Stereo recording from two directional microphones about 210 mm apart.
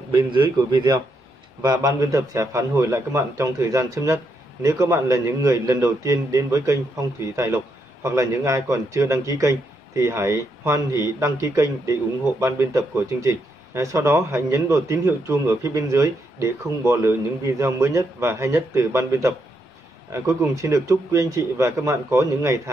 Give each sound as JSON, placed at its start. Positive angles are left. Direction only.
{"t": 0.3, "sound": "a man's voice", "side_deg": -20}